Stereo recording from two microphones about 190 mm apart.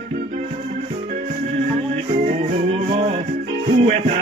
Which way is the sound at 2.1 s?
40° right (ahead or behind).